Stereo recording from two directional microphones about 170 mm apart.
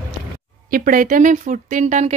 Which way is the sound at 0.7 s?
55° right (ahead or behind).